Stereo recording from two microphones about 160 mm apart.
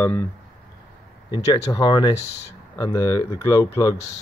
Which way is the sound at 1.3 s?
25° left (ahead or behind).